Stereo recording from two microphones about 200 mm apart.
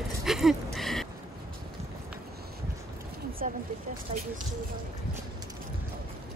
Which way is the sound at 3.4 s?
40° right (ahead or behind).